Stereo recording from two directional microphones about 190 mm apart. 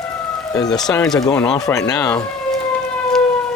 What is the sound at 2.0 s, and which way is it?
Speech, 5° left (ahead or behind).